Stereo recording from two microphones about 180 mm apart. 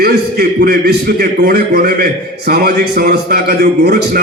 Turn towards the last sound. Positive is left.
turn(degrees=-60)  # may be behind; listen again after turning